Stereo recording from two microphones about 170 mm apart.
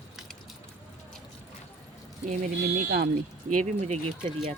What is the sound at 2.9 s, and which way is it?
Speech, 65° right (ahead or behind).